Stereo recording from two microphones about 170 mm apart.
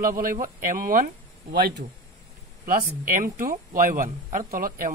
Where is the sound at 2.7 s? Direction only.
55° right (ahead or behind).